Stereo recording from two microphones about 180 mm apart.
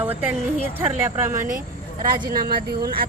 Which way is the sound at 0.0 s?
10° right (ahead or behind).